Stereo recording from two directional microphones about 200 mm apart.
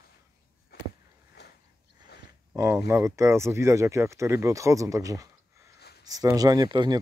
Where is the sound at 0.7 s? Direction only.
50° left (ahead or behind).